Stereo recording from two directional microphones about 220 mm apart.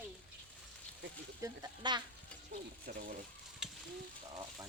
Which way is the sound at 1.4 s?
20° right (ahead or behind).